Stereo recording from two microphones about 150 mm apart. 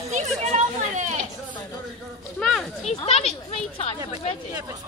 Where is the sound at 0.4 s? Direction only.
50° right (ahead or behind).